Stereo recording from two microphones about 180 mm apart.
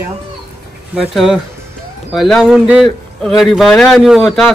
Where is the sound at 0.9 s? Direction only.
Centre (ahead or behind).